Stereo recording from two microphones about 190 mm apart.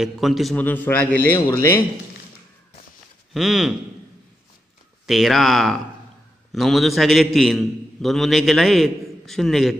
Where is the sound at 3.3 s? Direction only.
Centre (ahead or behind).